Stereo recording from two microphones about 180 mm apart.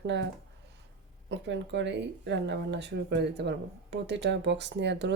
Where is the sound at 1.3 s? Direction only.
75° right (ahead or behind).